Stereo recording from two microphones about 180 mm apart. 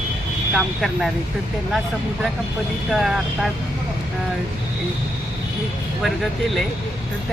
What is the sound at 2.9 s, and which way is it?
Speech, centre (ahead or behind).